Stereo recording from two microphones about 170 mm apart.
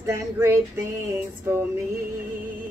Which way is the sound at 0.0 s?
15° right (ahead or behind).